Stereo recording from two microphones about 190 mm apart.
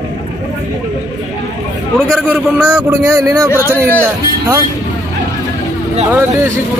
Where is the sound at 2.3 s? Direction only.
5° right (ahead or behind).